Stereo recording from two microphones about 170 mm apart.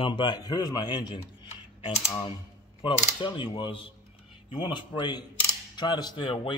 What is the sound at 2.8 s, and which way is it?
Speech, 30° left (ahead or behind).